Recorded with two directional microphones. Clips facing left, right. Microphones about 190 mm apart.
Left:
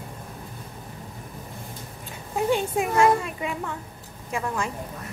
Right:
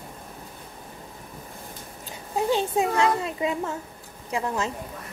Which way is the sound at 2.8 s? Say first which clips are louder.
Left 4 dB; 25° right (ahead or behind).